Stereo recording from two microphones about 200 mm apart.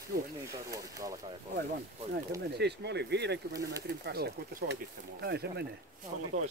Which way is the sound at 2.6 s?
55° right (ahead or behind).